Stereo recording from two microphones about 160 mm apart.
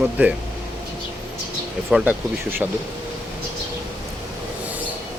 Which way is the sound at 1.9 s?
10° right (ahead or behind).